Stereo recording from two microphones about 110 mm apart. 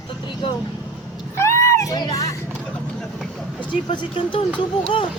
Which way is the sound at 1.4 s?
25° left (ahead or behind).